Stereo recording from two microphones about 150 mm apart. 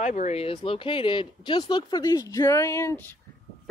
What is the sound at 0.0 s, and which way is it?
Speech, 50° left (ahead or behind).